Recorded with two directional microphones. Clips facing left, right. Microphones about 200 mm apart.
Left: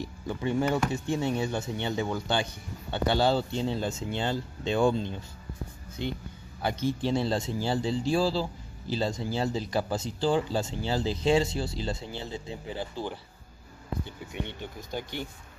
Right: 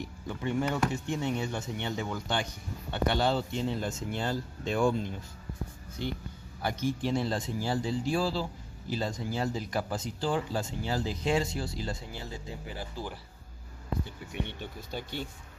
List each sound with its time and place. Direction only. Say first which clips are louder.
0.0 s speech: left 3 dB; 30° left (ahead or behind)
14.9 s speech: left 2 dB; 15° left (ahead or behind)